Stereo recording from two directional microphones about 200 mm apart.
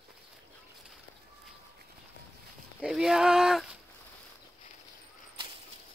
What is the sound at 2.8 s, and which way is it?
Speech, centre (ahead or behind).